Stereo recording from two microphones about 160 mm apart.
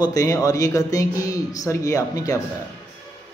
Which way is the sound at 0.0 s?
20° left (ahead or behind).